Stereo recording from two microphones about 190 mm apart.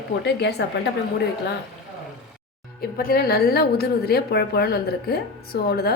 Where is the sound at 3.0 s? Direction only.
55° left (ahead or behind).